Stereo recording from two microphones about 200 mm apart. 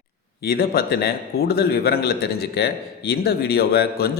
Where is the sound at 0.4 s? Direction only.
50° left (ahead or behind).